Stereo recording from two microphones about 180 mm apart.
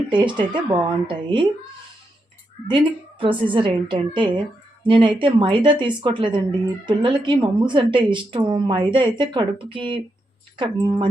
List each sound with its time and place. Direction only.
0.1 s speech: 25° right (ahead or behind)
2.6 s speech: 30° right (ahead or behind)